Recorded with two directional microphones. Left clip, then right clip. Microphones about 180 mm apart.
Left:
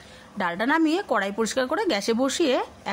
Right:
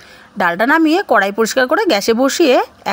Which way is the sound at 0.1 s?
35° right (ahead or behind).